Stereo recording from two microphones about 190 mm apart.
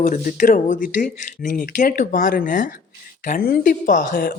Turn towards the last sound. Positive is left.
turn(degrees=45)  # may be behind; listen again after turning